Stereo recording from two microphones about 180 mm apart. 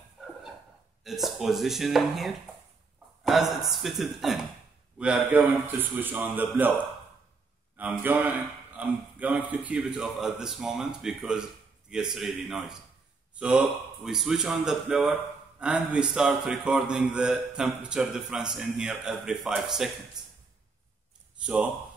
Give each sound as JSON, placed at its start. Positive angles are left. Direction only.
{"t": 1.0, "sound": "a man's voice", "side_deg": 0}
{"t": 7.7, "sound": "a man's voice", "side_deg": -10}
{"t": 21.4, "sound": "speech", "side_deg": -5}